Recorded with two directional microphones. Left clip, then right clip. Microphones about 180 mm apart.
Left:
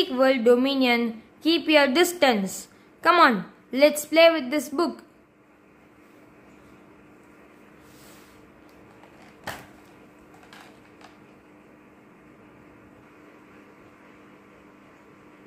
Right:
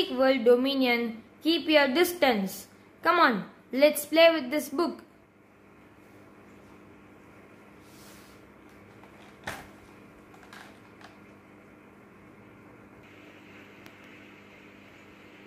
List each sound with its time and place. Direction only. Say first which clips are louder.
0.0 s a woman's voice: left 3 dB; 20° left (ahead or behind)